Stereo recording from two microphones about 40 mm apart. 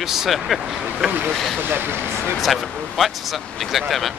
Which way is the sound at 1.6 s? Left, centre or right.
Right.